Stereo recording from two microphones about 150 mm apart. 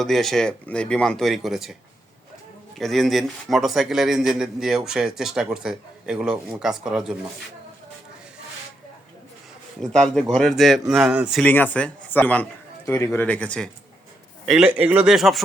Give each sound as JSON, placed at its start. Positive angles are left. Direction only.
{"t": 0.0, "sound": "speech", "side_deg": 0}
{"t": 2.7, "sound": "speech", "side_deg": 0}
{"t": 9.8, "sound": "speech", "side_deg": 5}
{"t": 11.3, "sound": "a man's voice", "side_deg": 10}
{"t": 14.4, "sound": "speech", "side_deg": -5}